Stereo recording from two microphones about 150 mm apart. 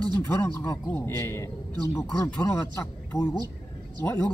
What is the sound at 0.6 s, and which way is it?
Speech, 15° left (ahead or behind).